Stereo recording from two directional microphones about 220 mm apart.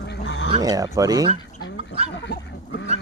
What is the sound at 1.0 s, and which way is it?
Speech, 15° right (ahead or behind).